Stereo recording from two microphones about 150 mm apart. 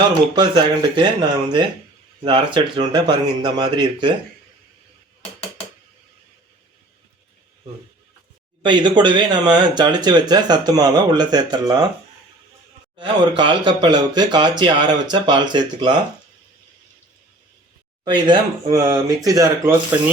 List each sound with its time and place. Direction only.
0.3 s speech: 30° right (ahead or behind)
8.6 s speech: 30° right (ahead or behind)
13.0 s speech: 30° right (ahead or behind)
18.0 s speech: 30° right (ahead or behind)